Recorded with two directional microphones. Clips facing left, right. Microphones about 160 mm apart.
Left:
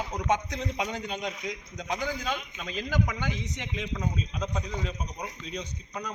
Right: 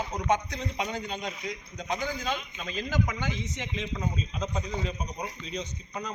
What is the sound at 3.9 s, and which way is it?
A man's voice, centre (ahead or behind).